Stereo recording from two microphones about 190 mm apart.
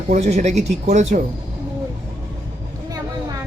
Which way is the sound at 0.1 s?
35° right (ahead or behind).